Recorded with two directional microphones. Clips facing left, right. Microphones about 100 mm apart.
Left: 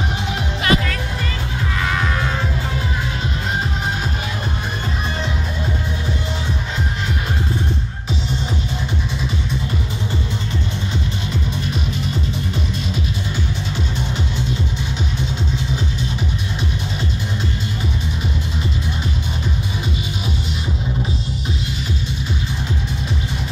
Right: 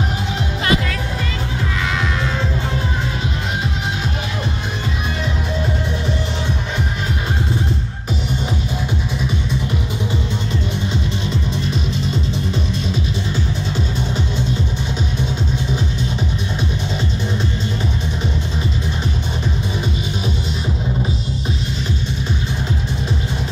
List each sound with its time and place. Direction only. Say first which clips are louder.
0.6 s music: left 1 dB; 25° right (ahead or behind)